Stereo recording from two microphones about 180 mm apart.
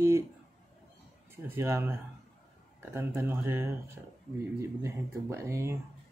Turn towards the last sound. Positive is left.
turn(degrees=-15)  # may be behind; listen again after turning